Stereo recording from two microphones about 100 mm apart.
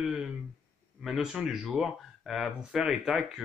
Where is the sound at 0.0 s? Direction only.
5° right (ahead or behind).